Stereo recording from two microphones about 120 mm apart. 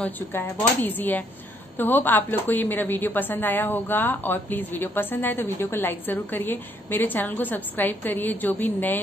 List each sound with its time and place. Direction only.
0.0 s a woman's voice: 15° left (ahead or behind)